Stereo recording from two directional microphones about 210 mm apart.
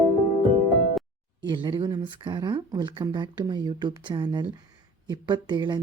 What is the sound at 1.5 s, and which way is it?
Speech, 20° right (ahead or behind).